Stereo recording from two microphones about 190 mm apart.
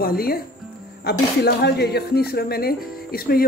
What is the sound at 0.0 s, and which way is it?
Speech, 50° left (ahead or behind).